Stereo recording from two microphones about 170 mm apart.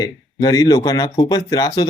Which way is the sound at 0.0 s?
20° left (ahead or behind).